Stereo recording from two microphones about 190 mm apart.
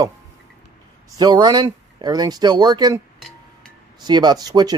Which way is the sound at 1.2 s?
20° right (ahead or behind).